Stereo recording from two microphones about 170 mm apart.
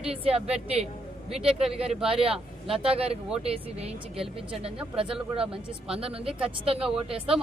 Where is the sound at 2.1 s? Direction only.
35° right (ahead or behind).